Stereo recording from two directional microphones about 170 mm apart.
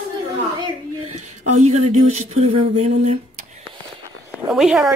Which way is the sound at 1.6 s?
40° right (ahead or behind).